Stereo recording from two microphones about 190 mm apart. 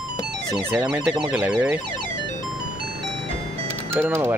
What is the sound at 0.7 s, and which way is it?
Speech, 15° right (ahead or behind).